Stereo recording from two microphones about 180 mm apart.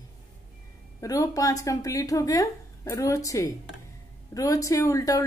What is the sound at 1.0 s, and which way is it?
A woman's voice, 20° left (ahead or behind).